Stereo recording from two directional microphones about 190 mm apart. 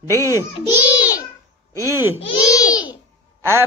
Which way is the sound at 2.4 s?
20° left (ahead or behind).